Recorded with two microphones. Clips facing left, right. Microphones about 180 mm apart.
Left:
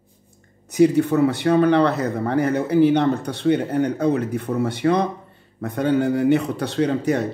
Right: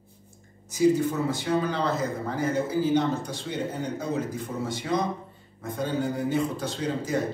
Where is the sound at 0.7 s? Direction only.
65° left (ahead or behind).